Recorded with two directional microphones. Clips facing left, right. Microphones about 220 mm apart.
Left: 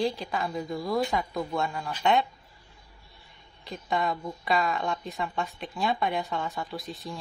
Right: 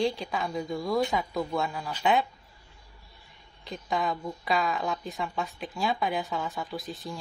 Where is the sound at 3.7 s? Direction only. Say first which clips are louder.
Left 1 dB; centre (ahead or behind).